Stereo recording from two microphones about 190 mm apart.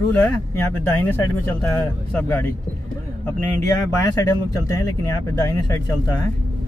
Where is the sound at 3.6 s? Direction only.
15° left (ahead or behind).